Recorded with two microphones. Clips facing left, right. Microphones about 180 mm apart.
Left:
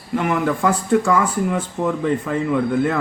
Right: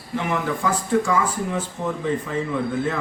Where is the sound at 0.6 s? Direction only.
60° left (ahead or behind).